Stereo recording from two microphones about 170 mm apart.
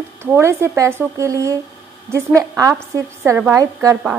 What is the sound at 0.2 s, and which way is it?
A woman's voice, 15° right (ahead or behind).